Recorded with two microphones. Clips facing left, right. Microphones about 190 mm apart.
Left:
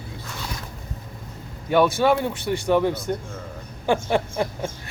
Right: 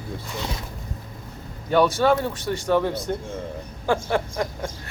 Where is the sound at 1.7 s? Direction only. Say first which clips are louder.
Even; 10° left (ahead or behind).